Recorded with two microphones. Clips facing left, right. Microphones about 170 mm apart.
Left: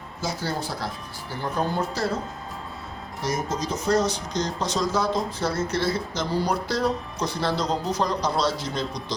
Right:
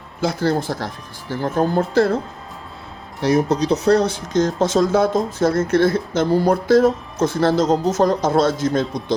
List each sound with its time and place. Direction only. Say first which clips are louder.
0.2 s speech: right 9 dB; 55° right (ahead or behind)
3.2 s speech: right 10 dB; 65° right (ahead or behind)